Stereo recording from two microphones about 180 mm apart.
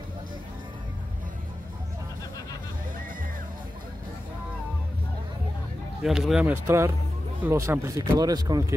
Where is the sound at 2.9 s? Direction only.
50° right (ahead or behind).